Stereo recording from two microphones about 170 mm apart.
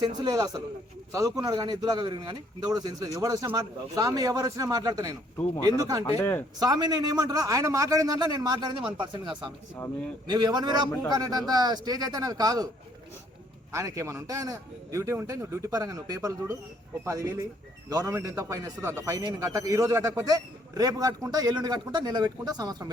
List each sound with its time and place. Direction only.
0.2 s speech: 20° right (ahead or behind)
6.1 s speech: 15° left (ahead or behind)
6.6 s speech: 25° right (ahead or behind)
13.7 s speech: 20° right (ahead or behind)